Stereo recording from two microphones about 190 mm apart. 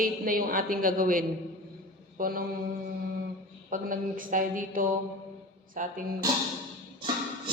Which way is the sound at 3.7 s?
45° right (ahead or behind).